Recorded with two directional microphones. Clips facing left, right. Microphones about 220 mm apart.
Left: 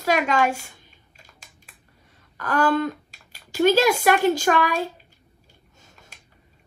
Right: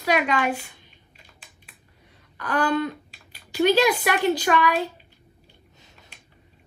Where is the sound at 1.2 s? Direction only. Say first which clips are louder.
Left 2 dB; 45° left (ahead or behind).